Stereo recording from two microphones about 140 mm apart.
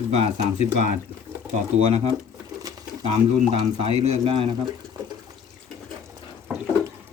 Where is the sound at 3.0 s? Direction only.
50° right (ahead or behind).